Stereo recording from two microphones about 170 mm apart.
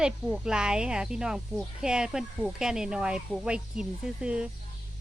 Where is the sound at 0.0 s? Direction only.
5° right (ahead or behind).